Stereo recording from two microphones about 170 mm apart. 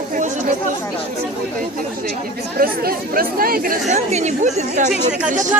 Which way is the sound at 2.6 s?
60° right (ahead or behind).